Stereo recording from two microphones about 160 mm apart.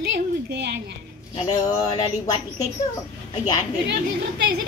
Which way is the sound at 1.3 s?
25° left (ahead or behind).